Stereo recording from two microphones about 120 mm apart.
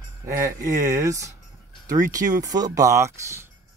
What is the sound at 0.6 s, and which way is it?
Speech, 25° right (ahead or behind).